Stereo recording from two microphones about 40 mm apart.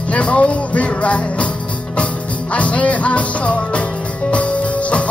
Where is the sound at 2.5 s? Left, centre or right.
Left.